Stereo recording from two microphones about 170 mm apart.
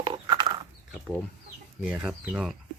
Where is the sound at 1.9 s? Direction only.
5° right (ahead or behind).